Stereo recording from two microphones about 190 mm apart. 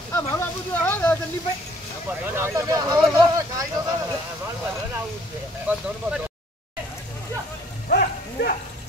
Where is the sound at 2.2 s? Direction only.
10° right (ahead or behind).